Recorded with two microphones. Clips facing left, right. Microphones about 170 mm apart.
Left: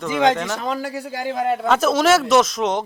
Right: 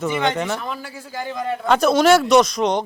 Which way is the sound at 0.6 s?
80° left.